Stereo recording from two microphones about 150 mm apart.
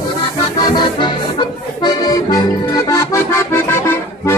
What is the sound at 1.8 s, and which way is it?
Accordion, 25° left (ahead or behind).